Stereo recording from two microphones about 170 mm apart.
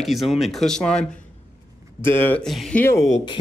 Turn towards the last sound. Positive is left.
turn(degrees=20)  # may be behind; listen again after turning